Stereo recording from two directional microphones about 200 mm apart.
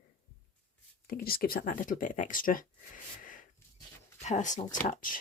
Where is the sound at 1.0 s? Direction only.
50° left (ahead or behind).